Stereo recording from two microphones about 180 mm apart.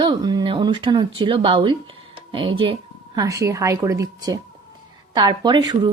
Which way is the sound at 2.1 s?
30° right (ahead or behind).